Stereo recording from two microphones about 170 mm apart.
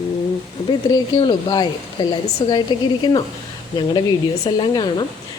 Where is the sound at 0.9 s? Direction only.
25° left (ahead or behind).